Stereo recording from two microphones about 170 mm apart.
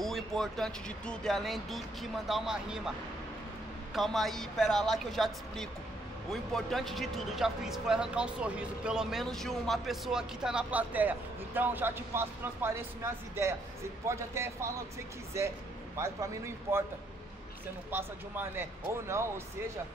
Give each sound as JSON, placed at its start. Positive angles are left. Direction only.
{"t": 0.0, "sound": "speech", "side_deg": 0}
{"t": 3.9, "sound": "speech", "side_deg": 0}
{"t": 17.9, "sound": "speech", "side_deg": -15}